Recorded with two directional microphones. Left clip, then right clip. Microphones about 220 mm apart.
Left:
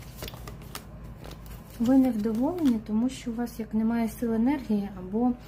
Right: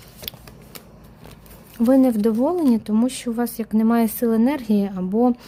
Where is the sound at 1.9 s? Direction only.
55° right (ahead or behind).